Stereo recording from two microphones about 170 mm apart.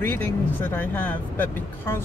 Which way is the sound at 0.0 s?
15° left (ahead or behind).